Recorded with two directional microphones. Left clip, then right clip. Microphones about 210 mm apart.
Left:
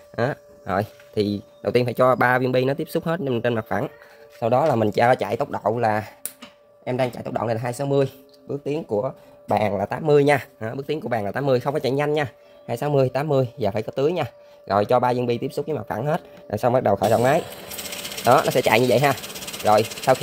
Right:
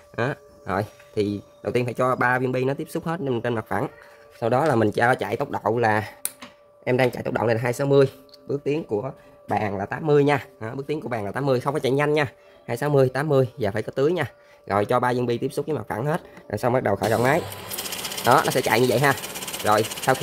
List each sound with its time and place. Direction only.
0.1 s speech: 15° left (ahead or behind)
4.4 s speech: centre (ahead or behind)
8.9 s speech: 20° left (ahead or behind); by 18.5 s 5° left (ahead or behind)
18.5 s speech: 15° left (ahead or behind)